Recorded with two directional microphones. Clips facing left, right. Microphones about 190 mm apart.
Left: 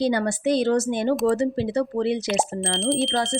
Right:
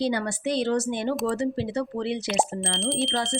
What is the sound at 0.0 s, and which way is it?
Speech, 45° left (ahead or behind).